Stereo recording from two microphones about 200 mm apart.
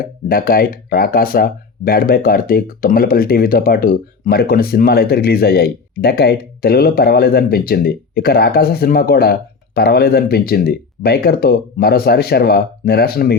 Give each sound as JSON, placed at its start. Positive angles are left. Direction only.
{"t": 0.0, "sound": "speech", "side_deg": 45}